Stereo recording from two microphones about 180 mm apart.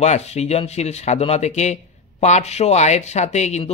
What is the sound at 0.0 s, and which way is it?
Speech, 40° left (ahead or behind).